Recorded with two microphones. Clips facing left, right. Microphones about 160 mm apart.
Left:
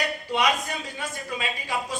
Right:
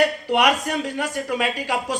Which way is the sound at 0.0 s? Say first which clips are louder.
Right 7 dB; 70° right (ahead or behind).